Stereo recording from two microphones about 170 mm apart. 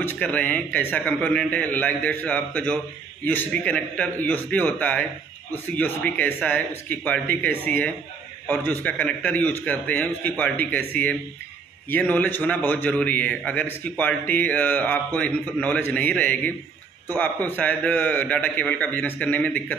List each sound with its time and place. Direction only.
0.0 s a man's voice: 10° left (ahead or behind)